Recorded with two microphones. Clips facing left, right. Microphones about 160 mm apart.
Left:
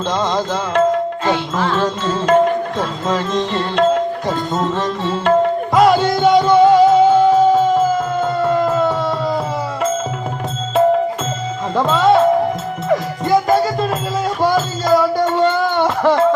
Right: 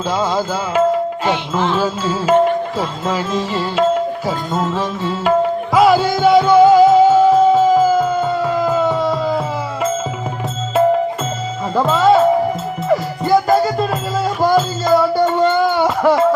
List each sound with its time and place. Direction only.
0.1 s music: 5° right (ahead or behind)
1.2 s music: 20° right (ahead or behind)
1.7 s music: 5° right (ahead or behind)
11.7 s music: centre (ahead or behind)